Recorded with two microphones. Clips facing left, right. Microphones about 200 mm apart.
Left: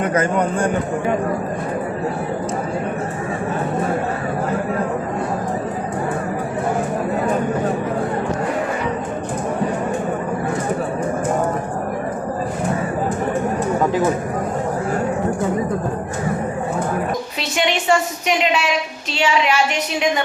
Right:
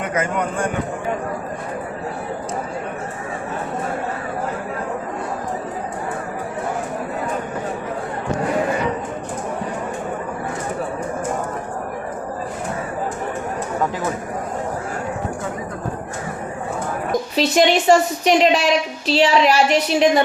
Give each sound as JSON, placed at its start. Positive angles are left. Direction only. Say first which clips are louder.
{"t": 0.0, "sound": "a man's voice", "louder": "left 4 dB", "side_deg": 35}
{"t": 17.3, "sound": "a woman's voice", "louder": "right 9 dB", "side_deg": -35}